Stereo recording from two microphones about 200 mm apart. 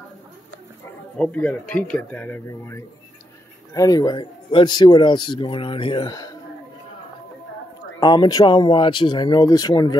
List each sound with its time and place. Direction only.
1.1 s speech: 5° left (ahead or behind)
8.0 s speech: 20° left (ahead or behind)